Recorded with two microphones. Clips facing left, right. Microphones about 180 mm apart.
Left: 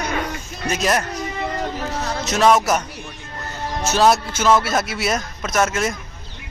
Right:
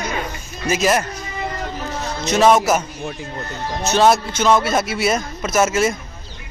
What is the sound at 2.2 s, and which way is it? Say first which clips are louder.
Speech: right 2 dB; centre (ahead or behind).